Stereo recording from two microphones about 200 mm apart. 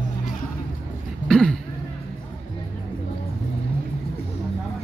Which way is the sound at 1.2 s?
5° left (ahead or behind).